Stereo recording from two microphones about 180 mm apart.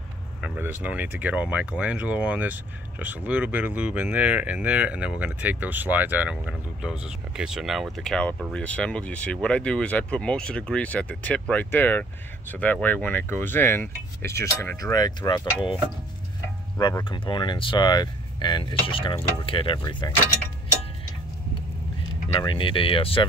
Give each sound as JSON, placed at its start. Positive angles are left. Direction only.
{"t": 0.4, "sound": "speech", "side_deg": -10}
{"t": 22.3, "sound": "speech", "side_deg": 25}